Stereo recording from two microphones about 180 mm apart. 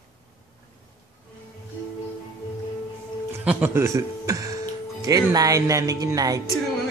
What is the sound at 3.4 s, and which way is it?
Speech, 10° right (ahead or behind).